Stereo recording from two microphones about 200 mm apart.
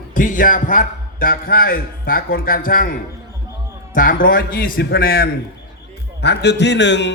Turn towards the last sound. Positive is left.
turn(degrees=60)  # may be behind; listen again after turning